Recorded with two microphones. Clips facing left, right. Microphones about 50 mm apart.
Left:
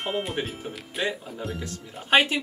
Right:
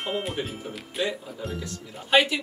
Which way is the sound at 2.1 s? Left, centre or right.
Left.